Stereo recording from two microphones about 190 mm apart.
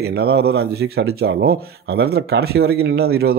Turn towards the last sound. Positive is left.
turn(degrees=-55)  # may be behind; listen again after turning